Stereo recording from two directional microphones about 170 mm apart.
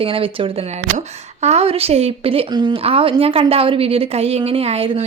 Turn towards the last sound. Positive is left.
turn(degrees=-35)  # may be behind; listen again after turning